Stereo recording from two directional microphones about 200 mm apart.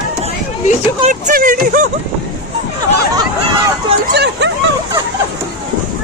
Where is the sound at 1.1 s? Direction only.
40° right (ahead or behind).